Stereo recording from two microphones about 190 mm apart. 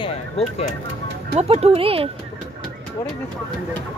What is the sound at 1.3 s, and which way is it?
Speech, 30° right (ahead or behind).